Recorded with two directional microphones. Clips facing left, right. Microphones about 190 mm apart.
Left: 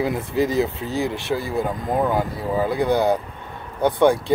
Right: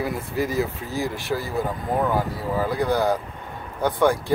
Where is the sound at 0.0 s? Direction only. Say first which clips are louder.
Left 4 dB; 20° left (ahead or behind).